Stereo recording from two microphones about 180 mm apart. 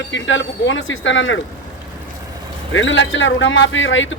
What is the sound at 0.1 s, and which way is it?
A man's voice, 90° left.